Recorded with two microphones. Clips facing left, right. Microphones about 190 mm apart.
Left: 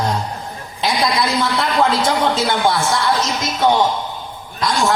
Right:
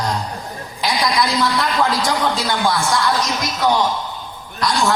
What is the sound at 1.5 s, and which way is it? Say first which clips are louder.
A man's voice: left 2 dB; 25° left (ahead or behind).